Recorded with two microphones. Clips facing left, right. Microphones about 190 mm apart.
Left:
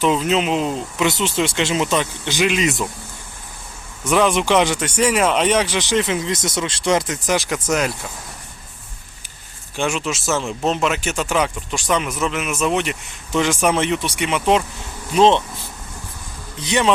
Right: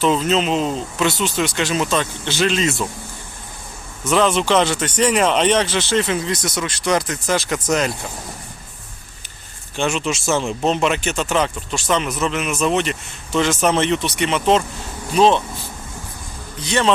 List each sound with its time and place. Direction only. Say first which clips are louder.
0.0 s speech: even; 10° left (ahead or behind)
4.1 s speech: even; 15° left (ahead or behind)
9.7 s speech: right 1 dB; 10° left (ahead or behind)
16.6 s speech: even; 15° left (ahead or behind)